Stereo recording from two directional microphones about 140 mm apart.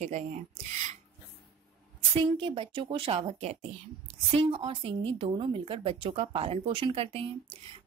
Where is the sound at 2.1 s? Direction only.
40° right (ahead or behind).